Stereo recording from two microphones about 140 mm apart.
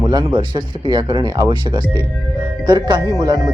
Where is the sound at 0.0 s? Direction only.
25° right (ahead or behind).